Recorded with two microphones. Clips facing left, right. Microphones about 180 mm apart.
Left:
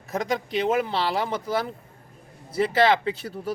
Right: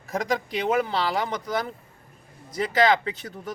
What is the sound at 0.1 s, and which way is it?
Speech, centre (ahead or behind).